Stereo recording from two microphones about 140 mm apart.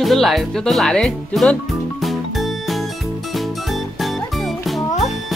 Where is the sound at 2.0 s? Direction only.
Centre (ahead or behind).